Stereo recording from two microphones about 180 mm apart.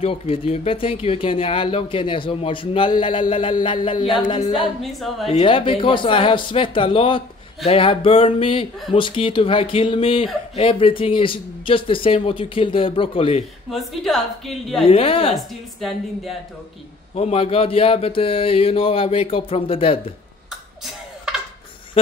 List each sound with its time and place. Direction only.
0.0 s speech: 35° left (ahead or behind)
5.1 s a woman's voice: centre (ahead or behind)
5.4 s speech: 30° left (ahead or behind)
13.7 s a woman's voice: centre (ahead or behind)
14.9 s speech: 30° left (ahead or behind)
15.3 s a woman's voice: centre (ahead or behind)
17.1 s speech: 35° left (ahead or behind)
22.0 s speech: 30° left (ahead or behind)